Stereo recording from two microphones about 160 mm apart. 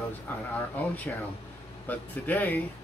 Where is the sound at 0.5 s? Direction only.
10° left (ahead or behind).